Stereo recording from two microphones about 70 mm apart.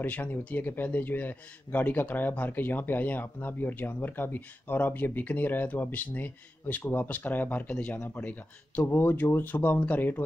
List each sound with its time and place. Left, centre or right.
0.0 s a man's voice: left
7.1 s a man's voice: left